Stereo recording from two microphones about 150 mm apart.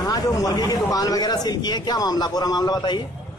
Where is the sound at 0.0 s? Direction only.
25° left (ahead or behind).